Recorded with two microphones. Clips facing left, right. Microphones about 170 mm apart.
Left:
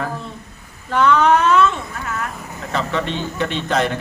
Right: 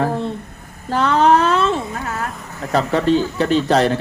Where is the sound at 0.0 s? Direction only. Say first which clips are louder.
Right 7 dB; 30° right (ahead or behind).